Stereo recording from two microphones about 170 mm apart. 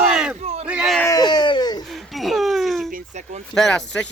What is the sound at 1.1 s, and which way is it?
Speech, 25° left (ahead or behind).